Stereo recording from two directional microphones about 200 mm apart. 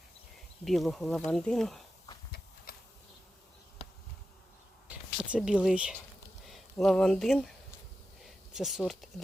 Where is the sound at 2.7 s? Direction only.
50° left (ahead or behind).